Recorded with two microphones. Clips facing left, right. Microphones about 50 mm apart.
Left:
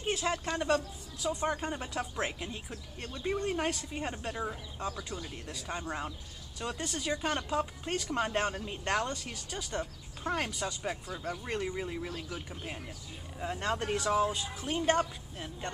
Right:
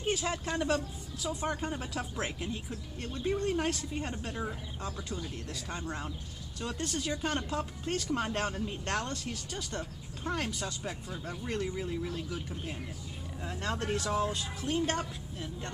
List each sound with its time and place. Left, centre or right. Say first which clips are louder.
0.0 s speech: even; centre
12.3 s speech: right 2 dB; centre